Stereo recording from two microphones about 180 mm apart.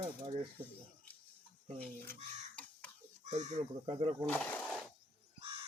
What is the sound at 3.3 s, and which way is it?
Speech, 40° right (ahead or behind).